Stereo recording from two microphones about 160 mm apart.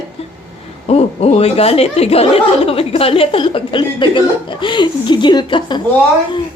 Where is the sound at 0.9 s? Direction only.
40° left (ahead or behind).